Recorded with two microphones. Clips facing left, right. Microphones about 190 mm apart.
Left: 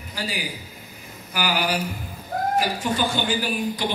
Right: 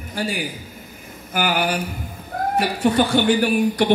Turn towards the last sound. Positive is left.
turn(degrees=-65)  # may be behind; listen again after turning